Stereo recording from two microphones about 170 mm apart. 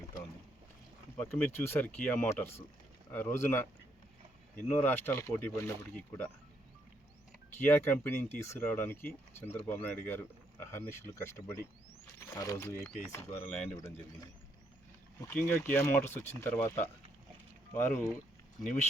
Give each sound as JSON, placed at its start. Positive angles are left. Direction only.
{"t": 1.1, "sound": "speech", "side_deg": 10}
{"t": 7.6, "sound": "speech", "side_deg": 15}
{"t": 15.3, "sound": "speech", "side_deg": 10}